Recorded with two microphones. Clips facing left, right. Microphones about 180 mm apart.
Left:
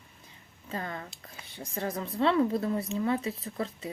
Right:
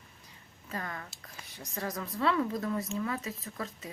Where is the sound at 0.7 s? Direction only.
25° left (ahead or behind).